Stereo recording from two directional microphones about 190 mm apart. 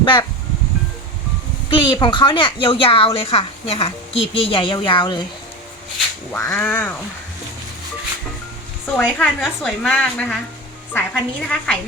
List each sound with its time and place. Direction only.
0.0 s speech: 25° left (ahead or behind)
1.7 s speech: 25° left (ahead or behind)
6.3 s a woman's voice: 10° left (ahead or behind)
9.1 s a woman's voice: 10° left (ahead or behind)